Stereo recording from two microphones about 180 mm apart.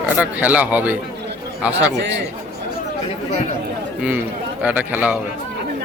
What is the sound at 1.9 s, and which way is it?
Speech, 70° right (ahead or behind).